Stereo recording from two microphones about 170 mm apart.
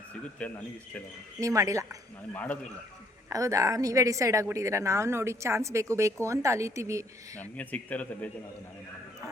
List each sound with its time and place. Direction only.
0.3 s speech: 10° left (ahead or behind)
1.4 s speech: 20° right (ahead or behind)
2.3 s speech: 10° left (ahead or behind)
3.2 s a woman's voice: 20° right (ahead or behind)
7.3 s speech: 10° left (ahead or behind)